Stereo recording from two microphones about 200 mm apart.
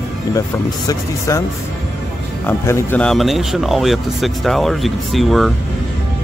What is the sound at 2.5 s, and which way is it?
Speech, 10° left (ahead or behind).